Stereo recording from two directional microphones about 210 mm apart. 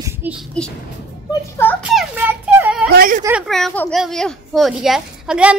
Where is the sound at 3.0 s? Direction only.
40° right (ahead or behind).